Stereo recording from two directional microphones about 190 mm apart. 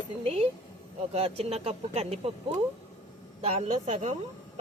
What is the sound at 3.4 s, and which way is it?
Speech, 35° right (ahead or behind).